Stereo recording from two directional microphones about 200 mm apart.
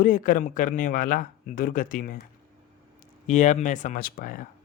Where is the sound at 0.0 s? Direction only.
40° left (ahead or behind).